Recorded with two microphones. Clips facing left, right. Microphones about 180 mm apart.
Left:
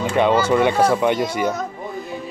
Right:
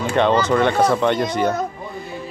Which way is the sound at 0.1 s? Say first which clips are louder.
Even; 10° left (ahead or behind).